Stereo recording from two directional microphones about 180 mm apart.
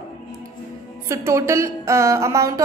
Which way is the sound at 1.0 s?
15° right (ahead or behind).